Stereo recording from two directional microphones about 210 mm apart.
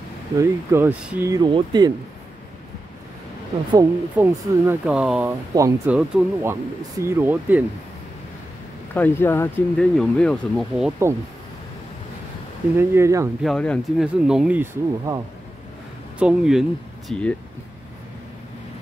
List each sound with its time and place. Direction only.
0.4 s speech: 10° right (ahead or behind)
3.7 s speech: 10° right (ahead or behind)
5.5 s speech: 15° right (ahead or behind)
5.9 s speech: centre (ahead or behind)
6.5 s speech: 15° right (ahead or behind)
8.9 s speech: 10° left (ahead or behind)
12.7 s speech: 10° right (ahead or behind)
13.4 s speech: 5° left (ahead or behind)